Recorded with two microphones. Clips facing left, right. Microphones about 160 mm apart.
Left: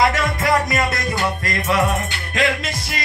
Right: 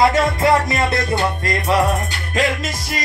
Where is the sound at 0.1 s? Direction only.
30° right (ahead or behind).